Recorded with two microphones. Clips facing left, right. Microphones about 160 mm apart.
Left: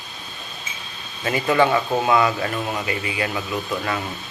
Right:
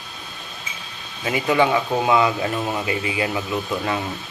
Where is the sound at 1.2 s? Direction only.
10° right (ahead or behind).